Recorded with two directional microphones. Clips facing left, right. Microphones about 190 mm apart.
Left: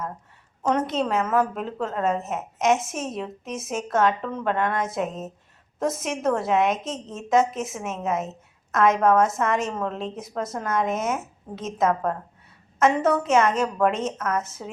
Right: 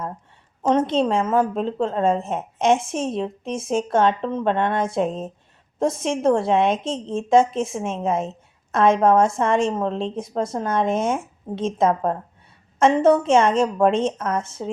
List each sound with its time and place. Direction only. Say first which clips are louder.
0.6 s a woman's voice: right 5 dB; 30° right (ahead or behind)